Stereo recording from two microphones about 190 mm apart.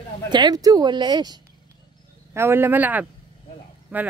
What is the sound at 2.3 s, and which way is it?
Speech, 10° right (ahead or behind).